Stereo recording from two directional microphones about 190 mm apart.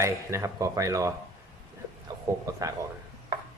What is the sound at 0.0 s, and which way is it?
Speech, 15° right (ahead or behind).